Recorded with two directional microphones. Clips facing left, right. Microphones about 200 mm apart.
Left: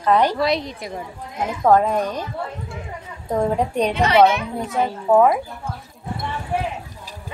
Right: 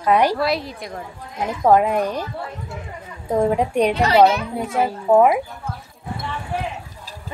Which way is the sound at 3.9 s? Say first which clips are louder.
Left 1 dB; 35° right (ahead or behind).